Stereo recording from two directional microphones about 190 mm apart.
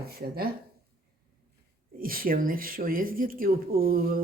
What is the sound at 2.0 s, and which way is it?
Speech, 50° right (ahead or behind).